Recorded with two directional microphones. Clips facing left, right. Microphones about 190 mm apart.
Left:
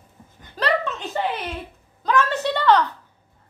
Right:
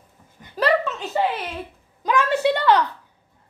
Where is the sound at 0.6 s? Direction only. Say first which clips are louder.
Right 3 dB; 5° right (ahead or behind).